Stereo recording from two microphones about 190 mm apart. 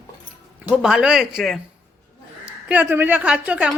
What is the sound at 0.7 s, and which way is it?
A woman's voice, 5° right (ahead or behind).